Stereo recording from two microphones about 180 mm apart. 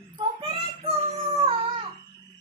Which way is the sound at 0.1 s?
30° right (ahead or behind).